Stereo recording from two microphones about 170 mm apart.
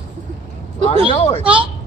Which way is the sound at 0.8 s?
35° left (ahead or behind).